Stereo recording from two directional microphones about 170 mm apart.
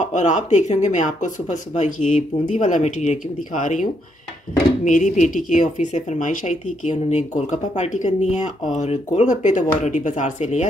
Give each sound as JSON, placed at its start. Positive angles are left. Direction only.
{"t": 0.0, "sound": "speech", "side_deg": 45}